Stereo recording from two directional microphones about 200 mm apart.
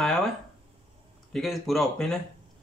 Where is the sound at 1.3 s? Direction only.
Centre (ahead or behind).